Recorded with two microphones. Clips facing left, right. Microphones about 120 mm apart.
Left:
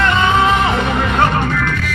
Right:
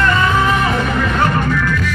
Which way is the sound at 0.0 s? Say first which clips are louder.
Left 1 dB; 20° left (ahead or behind).